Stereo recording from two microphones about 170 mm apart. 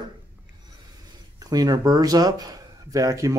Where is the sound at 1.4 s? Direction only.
20° right (ahead or behind).